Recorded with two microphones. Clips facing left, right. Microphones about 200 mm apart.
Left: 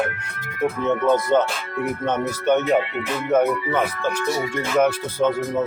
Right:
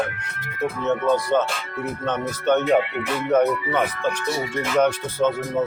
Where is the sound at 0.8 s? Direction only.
15° left (ahead or behind).